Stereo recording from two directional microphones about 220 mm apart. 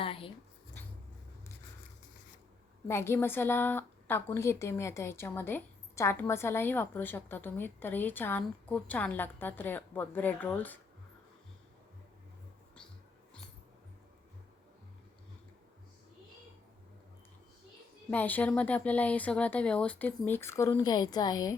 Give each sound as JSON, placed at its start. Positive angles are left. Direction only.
{"t": 0.0, "sound": "writing", "side_deg": 25}
{"t": 2.8, "sound": "a woman's voice", "side_deg": 10}
{"t": 18.1, "sound": "a woman's voice", "side_deg": 10}